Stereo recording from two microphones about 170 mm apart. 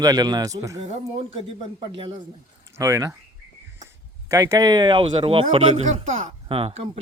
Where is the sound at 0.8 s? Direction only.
35° right (ahead or behind).